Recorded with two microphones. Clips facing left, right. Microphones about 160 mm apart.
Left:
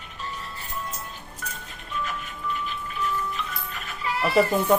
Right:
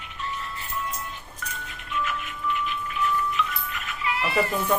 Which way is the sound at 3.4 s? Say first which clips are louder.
Right 4 dB; 35° left (ahead or behind).